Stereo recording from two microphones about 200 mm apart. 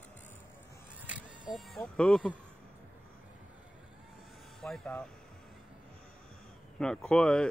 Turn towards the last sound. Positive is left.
turn(degrees=5)  # may be behind; listen again after turning